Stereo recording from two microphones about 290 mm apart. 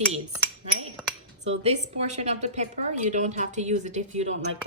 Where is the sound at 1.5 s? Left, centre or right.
Right.